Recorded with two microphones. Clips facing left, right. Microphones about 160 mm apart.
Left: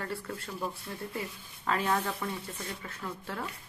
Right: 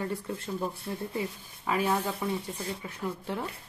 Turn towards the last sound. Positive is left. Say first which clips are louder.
# right 5 dB
turn(degrees=-20)  # may be behind; listen again after turning